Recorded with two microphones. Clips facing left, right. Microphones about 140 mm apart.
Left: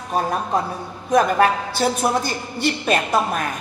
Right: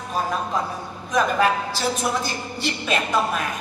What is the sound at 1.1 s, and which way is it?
A woman's voice, 55° left (ahead or behind).